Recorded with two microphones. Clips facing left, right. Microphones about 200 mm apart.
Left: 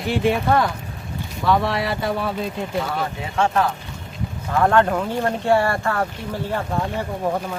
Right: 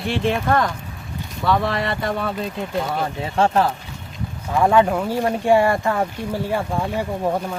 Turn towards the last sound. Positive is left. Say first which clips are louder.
# right 2 dB
turn(degrees=-10)  # may be behind; listen again after turning